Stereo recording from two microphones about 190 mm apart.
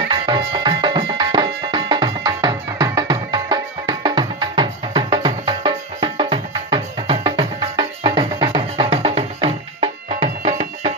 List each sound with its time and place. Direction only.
0.1 s music: 25° right (ahead or behind)